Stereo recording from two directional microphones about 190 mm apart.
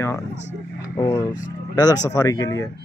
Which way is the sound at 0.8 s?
20° left (ahead or behind).